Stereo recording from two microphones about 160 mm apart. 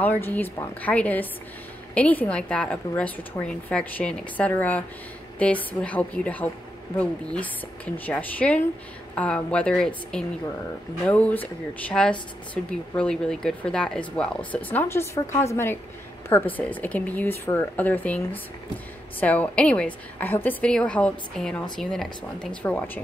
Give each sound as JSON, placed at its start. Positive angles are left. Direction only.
{"t": 0.0, "sound": "a woman's voice", "side_deg": 10}